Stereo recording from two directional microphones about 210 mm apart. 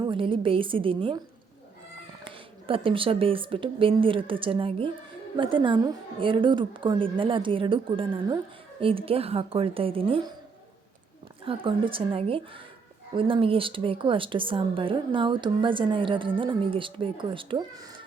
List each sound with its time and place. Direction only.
0.0 s a woman's voice: 25° right (ahead or behind)
2.2 s a woman's voice: 25° right (ahead or behind)
11.4 s a woman's voice: 25° right (ahead or behind)